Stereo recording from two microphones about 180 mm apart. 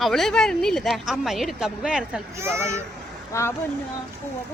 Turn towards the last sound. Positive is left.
turn(degrees=15)  # may be behind; listen again after turning